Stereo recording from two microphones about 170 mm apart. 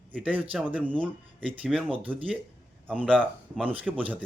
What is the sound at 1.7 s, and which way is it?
A man's voice, centre (ahead or behind).